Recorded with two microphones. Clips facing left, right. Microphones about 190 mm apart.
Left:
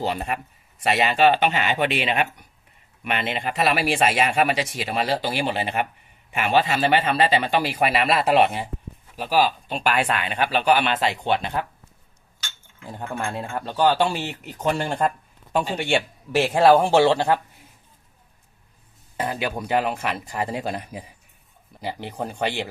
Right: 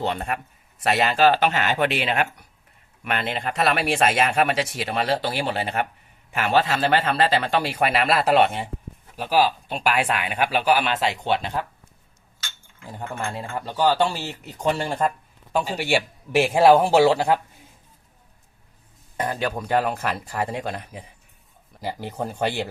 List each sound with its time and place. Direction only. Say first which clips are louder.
0.0 s speech: even; 5° left (ahead or behind)
1.4 s speech: even; 10° left (ahead or behind)
3.3 s speech: even; 5° left (ahead or behind)
5.5 s speech: even; 15° left (ahead or behind)
13.1 s speech: left 2 dB; 10° left (ahead or behind)
13.6 s speech: left 1 dB; 10° right (ahead or behind)
14.2 s speech: left 1 dB; centre (ahead or behind)
19.2 s speech: right 1 dB; 10° left (ahead or behind)
21.7 s a sound: even; 5° left (ahead or behind)
22.1 s speech: right 1 dB; 5° right (ahead or behind)